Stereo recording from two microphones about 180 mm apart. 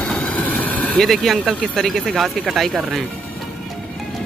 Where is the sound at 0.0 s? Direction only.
5° left (ahead or behind).